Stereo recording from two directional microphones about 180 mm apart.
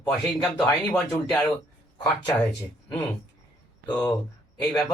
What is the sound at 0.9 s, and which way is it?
Speech, 5° left (ahead or behind).